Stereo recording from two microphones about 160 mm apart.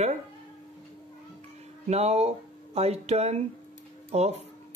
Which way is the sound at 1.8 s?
45° right (ahead or behind).